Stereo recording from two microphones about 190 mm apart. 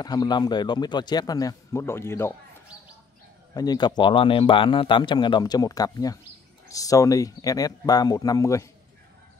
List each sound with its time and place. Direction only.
0.0 s speech: 20° left (ahead or behind)
3.5 s speech: 20° left (ahead or behind)